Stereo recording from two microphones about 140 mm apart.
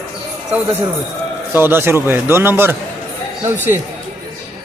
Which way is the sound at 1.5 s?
15° right (ahead or behind).